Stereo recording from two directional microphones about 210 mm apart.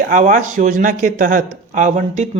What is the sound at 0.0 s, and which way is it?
Speech, 35° right (ahead or behind).